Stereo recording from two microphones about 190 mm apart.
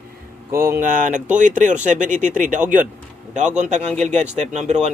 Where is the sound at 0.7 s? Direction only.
45° right (ahead or behind).